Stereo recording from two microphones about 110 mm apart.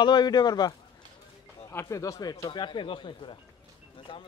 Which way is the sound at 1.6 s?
25° left (ahead or behind).